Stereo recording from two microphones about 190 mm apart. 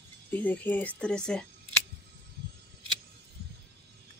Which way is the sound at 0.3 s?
10° left (ahead or behind).